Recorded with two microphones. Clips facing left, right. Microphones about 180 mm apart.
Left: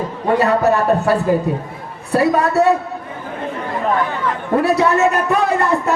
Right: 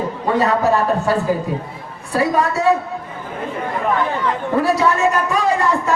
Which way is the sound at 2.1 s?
60° left (ahead or behind).